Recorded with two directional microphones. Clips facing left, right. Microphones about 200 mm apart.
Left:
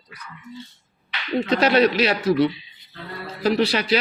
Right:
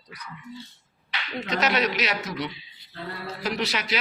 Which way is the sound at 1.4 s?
30° left (ahead or behind).